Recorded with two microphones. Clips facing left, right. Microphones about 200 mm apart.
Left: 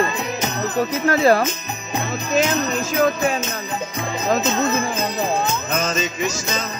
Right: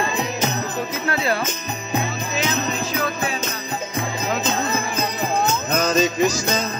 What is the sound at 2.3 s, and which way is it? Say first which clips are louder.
Jingle bell: left 5 dB; 45° left (ahead or behind).